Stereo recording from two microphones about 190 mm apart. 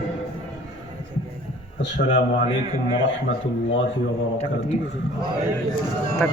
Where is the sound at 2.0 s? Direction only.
40° left (ahead or behind).